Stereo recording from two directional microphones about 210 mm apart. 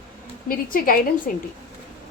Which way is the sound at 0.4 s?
40° left (ahead or behind).